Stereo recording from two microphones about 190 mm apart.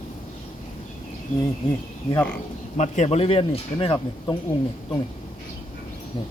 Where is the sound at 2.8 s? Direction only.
35° left (ahead or behind).